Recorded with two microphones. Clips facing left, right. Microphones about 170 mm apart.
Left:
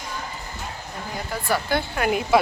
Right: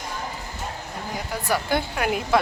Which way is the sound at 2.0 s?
Centre (ahead or behind).